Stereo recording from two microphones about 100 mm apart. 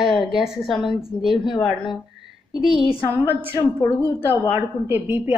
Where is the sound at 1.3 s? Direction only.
50° left (ahead or behind).